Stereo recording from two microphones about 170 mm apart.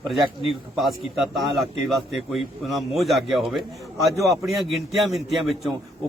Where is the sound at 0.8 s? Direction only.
Centre (ahead or behind).